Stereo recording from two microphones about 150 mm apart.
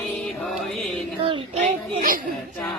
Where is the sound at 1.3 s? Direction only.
35° right (ahead or behind).